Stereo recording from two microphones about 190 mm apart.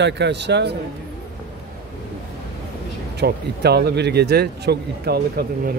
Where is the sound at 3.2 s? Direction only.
60° right (ahead or behind).